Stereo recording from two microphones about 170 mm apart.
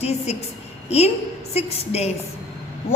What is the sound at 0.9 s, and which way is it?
A woman's voice, 40° left (ahead or behind).